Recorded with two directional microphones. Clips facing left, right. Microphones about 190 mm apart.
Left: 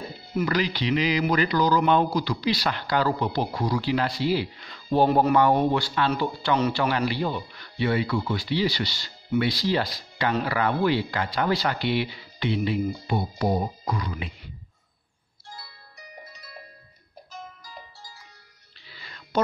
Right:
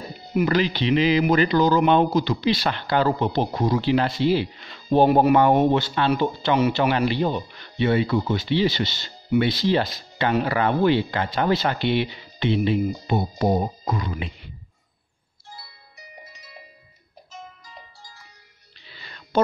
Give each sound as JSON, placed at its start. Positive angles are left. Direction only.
{"t": 0.3, "sound": "speech", "side_deg": -20}
{"t": 16.3, "sound": "music", "side_deg": -5}
{"t": 18.9, "sound": "music", "side_deg": -25}